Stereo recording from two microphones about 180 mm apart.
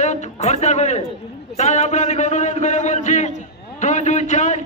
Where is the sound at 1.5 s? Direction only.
40° left (ahead or behind).